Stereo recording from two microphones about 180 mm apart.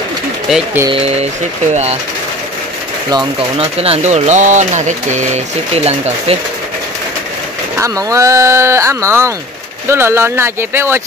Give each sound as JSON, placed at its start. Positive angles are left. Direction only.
{"t": 0.9, "sound": "speech", "side_deg": -35}
{"t": 3.1, "sound": "speech", "side_deg": -25}
{"t": 7.8, "sound": "speech", "side_deg": -15}